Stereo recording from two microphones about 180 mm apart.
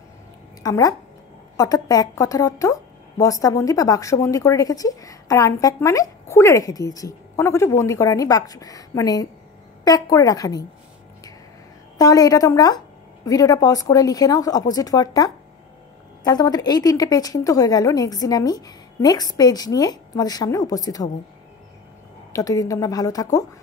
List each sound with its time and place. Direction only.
0.6 s a woman's voice: 20° left (ahead or behind)
12.0 s a woman's voice: 20° left (ahead or behind)
22.3 s a woman's voice: 20° left (ahead or behind)